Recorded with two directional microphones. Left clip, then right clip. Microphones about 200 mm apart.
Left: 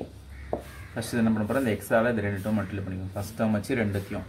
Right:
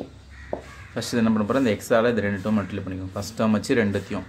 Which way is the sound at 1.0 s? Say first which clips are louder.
Right 4 dB; 40° right (ahead or behind).